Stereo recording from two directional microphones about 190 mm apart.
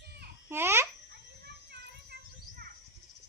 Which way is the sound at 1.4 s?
60° right (ahead or behind).